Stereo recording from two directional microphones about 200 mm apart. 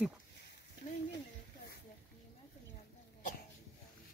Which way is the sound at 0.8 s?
40° left (ahead or behind).